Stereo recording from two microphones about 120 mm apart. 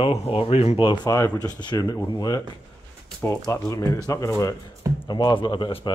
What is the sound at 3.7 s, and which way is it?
Speech, 30° left (ahead or behind).